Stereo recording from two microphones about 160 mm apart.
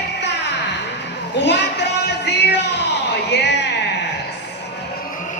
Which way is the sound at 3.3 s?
90° left.